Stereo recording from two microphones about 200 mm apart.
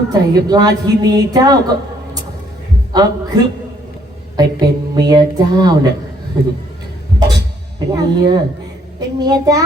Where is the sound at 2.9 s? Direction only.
20° right (ahead or behind).